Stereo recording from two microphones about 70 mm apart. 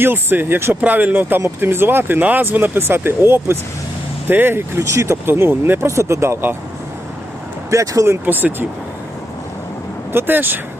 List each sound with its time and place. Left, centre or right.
0.0 s speech: right
7.7 s speech: right
8.2 s speech: right
10.1 s speech: right